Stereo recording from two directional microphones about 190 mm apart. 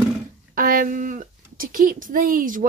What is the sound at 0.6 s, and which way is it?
Speech, 45° right (ahead or behind).